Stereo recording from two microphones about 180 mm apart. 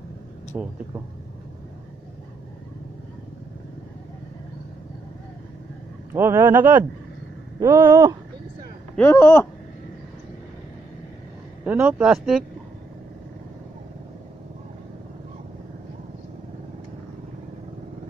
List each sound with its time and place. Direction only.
0.5 s speech: 10° right (ahead or behind)
6.1 s speech: 15° right (ahead or behind)
8.9 s speech: 10° left (ahead or behind)
11.6 s speech: 10° right (ahead or behind)